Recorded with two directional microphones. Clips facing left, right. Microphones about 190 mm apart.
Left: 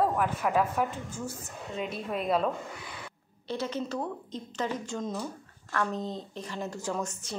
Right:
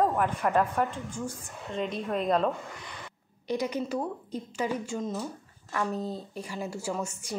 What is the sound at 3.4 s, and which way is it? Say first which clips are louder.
A woman's voice: right 3 dB; 15° right (ahead or behind).